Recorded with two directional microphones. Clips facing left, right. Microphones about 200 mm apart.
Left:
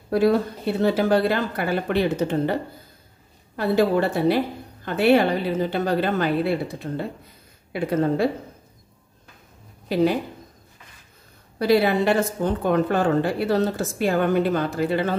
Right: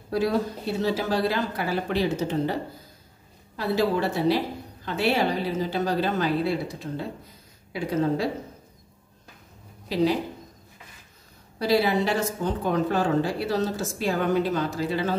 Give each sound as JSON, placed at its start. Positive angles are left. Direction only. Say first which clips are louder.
{"t": 0.1, "sound": "speech", "louder": "left 5 dB", "side_deg": 55}
{"t": 3.5, "sound": "speech", "louder": "left 4 dB", "side_deg": 55}
{"t": 11.5, "sound": "speech", "louder": "left 3 dB", "side_deg": 55}